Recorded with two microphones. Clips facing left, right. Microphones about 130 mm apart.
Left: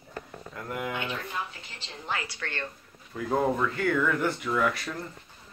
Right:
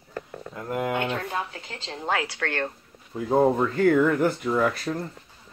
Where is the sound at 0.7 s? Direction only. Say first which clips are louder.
Right 7 dB; 45° right (ahead or behind).